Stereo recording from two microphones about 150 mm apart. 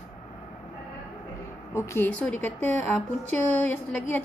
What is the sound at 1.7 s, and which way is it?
A woman's voice, 15° left (ahead or behind).